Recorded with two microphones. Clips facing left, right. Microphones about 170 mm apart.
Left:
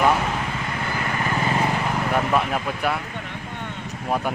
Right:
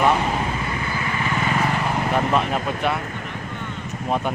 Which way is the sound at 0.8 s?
50° left (ahead or behind).